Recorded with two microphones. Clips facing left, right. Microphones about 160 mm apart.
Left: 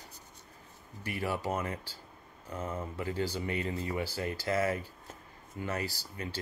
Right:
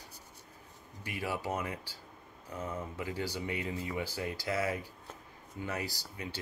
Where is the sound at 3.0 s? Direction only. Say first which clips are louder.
Left 4 dB; 10° right (ahead or behind).